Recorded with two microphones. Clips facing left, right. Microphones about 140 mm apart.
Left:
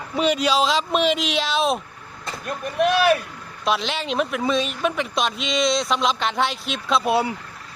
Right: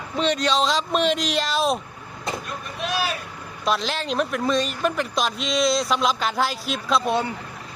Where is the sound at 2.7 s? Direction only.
60° left (ahead or behind).